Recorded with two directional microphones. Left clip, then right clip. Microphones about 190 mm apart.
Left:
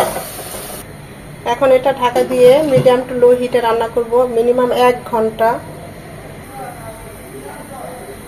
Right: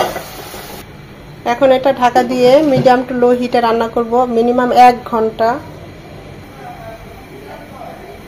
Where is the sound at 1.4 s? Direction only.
30° right (ahead or behind).